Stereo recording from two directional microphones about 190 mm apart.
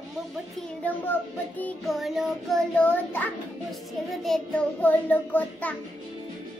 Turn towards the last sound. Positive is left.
turn(degrees=10)  # may be behind; listen again after turning